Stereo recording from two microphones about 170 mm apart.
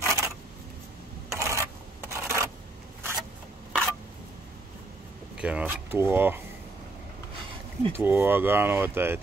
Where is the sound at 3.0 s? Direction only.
15° right (ahead or behind).